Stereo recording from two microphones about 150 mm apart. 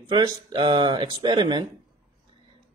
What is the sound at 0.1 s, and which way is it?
A man's voice, 30° right (ahead or behind).